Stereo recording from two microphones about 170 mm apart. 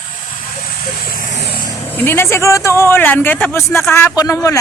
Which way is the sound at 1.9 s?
10° left (ahead or behind).